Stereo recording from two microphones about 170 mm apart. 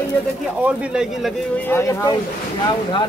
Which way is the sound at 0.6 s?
5° right (ahead or behind).